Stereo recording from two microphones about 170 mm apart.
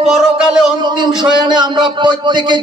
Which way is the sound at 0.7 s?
25° right (ahead or behind).